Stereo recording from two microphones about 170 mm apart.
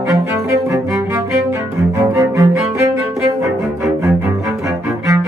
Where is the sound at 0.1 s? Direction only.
15° right (ahead or behind).